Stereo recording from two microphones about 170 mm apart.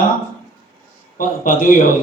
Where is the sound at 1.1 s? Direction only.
50° left (ahead or behind).